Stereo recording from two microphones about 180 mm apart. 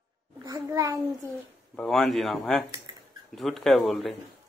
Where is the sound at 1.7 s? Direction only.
5° left (ahead or behind).